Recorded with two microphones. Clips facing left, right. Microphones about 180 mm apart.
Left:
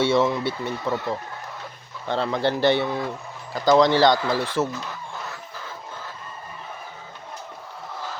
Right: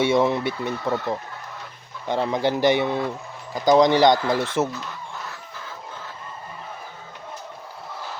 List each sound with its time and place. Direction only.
0.0 s speech: 15° right (ahead or behind)